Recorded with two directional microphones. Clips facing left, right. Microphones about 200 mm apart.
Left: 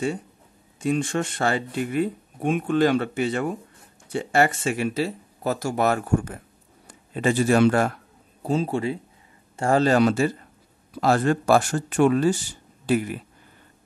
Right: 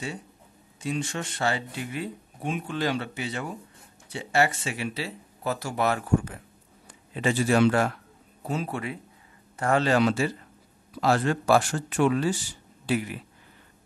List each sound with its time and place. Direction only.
0.7 s a man's voice: 50° left (ahead or behind)
8.5 s speech: 30° left (ahead or behind); by 13.2 s 45° left (ahead or behind)